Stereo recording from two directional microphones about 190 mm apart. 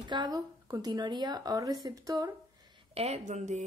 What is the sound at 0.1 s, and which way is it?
Speech, 20° right (ahead or behind).